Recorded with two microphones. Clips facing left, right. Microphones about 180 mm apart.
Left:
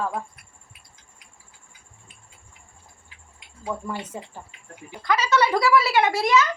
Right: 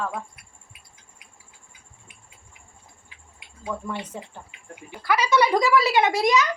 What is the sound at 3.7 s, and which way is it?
Speech, 5° left (ahead or behind).